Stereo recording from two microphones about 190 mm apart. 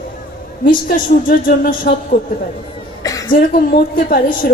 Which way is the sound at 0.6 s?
50° left (ahead or behind).